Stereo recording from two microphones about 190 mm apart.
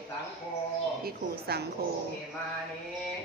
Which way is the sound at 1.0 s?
55° right (ahead or behind).